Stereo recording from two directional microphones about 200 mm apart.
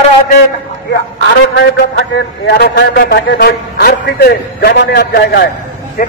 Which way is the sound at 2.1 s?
55° left (ahead or behind).